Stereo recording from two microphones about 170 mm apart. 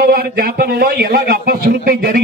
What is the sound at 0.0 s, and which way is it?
A man's voice, 65° right (ahead or behind).